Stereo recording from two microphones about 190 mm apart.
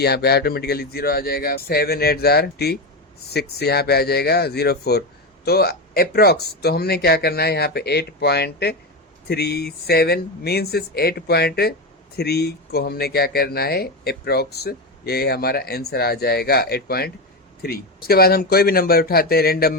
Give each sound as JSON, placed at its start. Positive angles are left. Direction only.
{"t": 0.0, "sound": "speech", "side_deg": 55}